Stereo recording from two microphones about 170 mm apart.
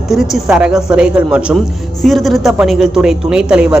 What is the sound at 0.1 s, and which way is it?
A man's voice, 5° right (ahead or behind).